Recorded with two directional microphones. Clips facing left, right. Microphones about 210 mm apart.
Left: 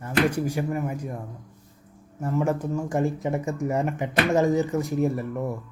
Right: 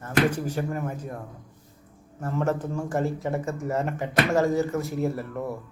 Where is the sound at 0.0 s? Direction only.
10° left (ahead or behind).